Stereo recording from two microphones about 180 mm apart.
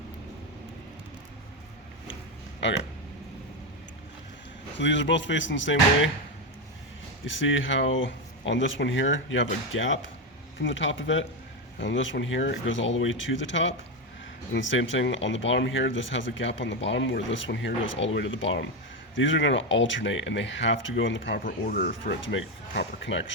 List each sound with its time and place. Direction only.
2.6 s speech: 80° left
4.8 s speech: 90° left
7.3 s speech: 90° left
21.4 s speech: 55° left (ahead or behind); by 23.3 s 85° left